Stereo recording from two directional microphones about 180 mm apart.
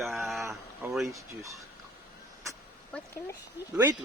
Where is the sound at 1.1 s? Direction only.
15° right (ahead or behind).